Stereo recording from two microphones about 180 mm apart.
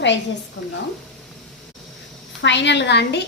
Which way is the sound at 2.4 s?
80° left.